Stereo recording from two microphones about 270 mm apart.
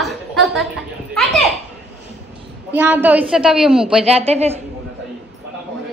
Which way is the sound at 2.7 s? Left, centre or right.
Centre.